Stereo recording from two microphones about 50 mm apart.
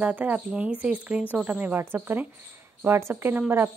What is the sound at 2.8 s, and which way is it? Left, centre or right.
Speech, right.